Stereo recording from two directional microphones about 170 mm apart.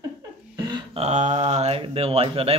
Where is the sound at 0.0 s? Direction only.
25° right (ahead or behind).